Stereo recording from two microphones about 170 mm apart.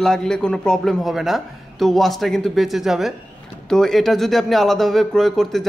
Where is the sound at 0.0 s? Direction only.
5° left (ahead or behind).